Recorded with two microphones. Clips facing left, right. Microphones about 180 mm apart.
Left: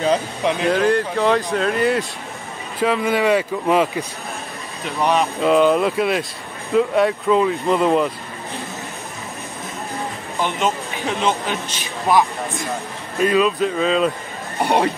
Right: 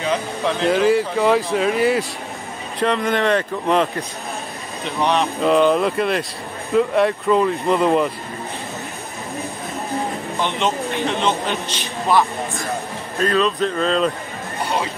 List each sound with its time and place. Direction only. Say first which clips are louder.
0.4 s speech: left 1 dB; 15° left (ahead or behind)
0.7 s speech: right 2 dB; 5° right (ahead or behind)
10.3 s speech: left 1 dB; 5° left (ahead or behind)
14.6 s speech: left 5 dB; 60° left (ahead or behind)